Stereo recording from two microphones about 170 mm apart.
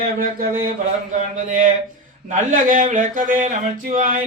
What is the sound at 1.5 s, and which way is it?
Speech, 50° right (ahead or behind).